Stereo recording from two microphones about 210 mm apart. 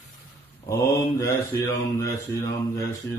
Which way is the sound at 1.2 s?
15° left (ahead or behind).